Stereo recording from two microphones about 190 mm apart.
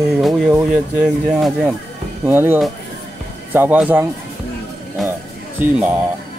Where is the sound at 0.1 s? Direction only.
5° right (ahead or behind).